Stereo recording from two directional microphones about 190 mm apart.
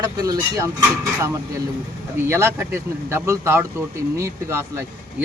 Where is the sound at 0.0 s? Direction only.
20° right (ahead or behind).